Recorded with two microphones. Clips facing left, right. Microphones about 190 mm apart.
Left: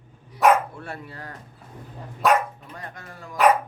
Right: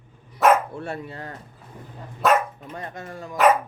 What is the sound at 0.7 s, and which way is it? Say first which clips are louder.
Speech: right 5 dB; 25° right (ahead or behind).